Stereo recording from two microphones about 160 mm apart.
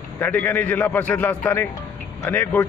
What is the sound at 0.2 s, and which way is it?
A man's voice, 10° left (ahead or behind).